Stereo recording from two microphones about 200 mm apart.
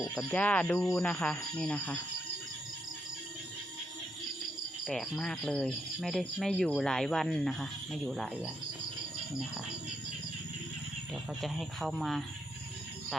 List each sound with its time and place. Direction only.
0.2 s speech: 5° left (ahead or behind)
4.9 s speech: centre (ahead or behind)
11.3 s speech: centre (ahead or behind)